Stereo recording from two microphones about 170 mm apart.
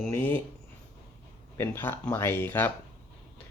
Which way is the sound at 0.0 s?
10° left (ahead or behind).